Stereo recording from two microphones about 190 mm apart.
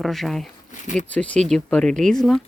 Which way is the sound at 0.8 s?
40° left (ahead or behind).